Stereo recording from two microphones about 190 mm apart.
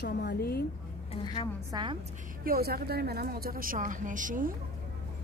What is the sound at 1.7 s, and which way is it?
Speech, 25° right (ahead or behind).